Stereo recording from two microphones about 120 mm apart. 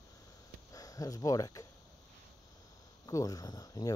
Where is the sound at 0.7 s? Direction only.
30° left (ahead or behind).